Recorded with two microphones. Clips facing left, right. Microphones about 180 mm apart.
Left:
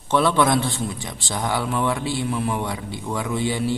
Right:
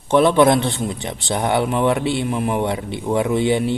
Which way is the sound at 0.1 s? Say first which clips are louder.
Right 5 dB; 20° right (ahead or behind).